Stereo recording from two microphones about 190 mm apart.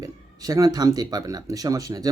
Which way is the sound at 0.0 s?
20° right (ahead or behind).